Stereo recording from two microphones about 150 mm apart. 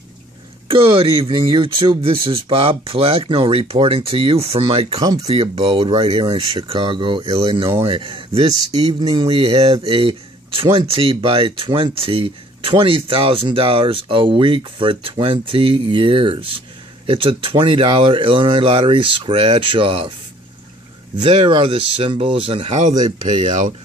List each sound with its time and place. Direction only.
0.7 s speech: 35° right (ahead or behind)
21.2 s speech: 30° right (ahead or behind); by 23.7 s 55° right (ahead or behind)